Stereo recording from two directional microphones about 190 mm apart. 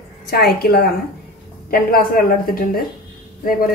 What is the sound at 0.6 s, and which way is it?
Speech, 55° left (ahead or behind).